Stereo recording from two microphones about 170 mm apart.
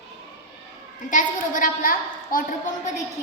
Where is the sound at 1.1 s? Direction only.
50° left (ahead or behind).